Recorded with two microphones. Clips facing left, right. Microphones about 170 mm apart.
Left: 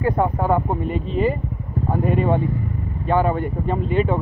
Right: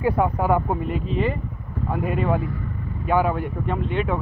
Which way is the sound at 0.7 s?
Centre (ahead or behind).